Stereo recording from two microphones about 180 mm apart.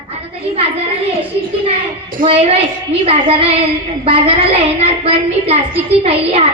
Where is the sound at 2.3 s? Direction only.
35° right (ahead or behind).